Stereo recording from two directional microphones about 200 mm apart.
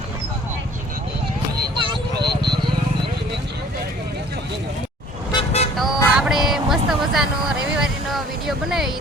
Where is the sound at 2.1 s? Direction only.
55° right (ahead or behind).